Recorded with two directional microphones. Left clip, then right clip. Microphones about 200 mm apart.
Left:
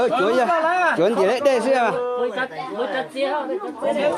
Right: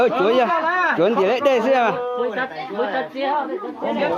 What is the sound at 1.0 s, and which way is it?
Speech, 5° left (ahead or behind).